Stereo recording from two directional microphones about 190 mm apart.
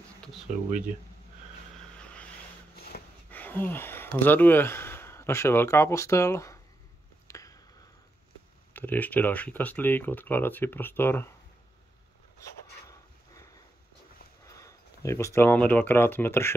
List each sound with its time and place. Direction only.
1.8 s vehicle: 5° left (ahead or behind)
2.7 s a sound: 55° left (ahead or behind)
3.3 s speech: 10° left (ahead or behind)
7.2 s a sound: 15° left (ahead or behind)
8.7 s speech: 10° left (ahead or behind)
14.4 s speech: 15° left (ahead or behind)